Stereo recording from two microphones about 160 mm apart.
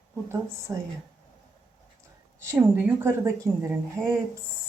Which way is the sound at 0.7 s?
20° right (ahead or behind).